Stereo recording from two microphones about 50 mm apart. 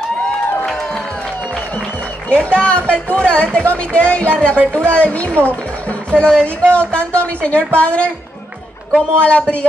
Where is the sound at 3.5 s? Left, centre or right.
Left.